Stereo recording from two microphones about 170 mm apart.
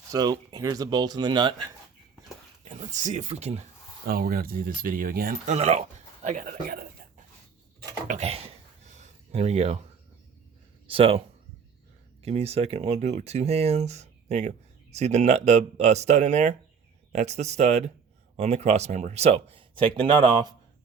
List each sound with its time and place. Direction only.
0.1 s speech: 25° right (ahead or behind)
2.6 s speech: 45° right (ahead or behind)
4.0 s speech: 60° right (ahead or behind)
5.5 s speech: 40° right (ahead or behind)
8.0 s speech: 45° right (ahead or behind)
10.8 s speech: 35° right (ahead or behind)
12.2 s speech: 35° right (ahead or behind)